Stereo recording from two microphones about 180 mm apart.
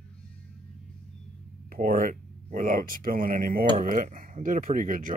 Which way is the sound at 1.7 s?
50° right (ahead or behind).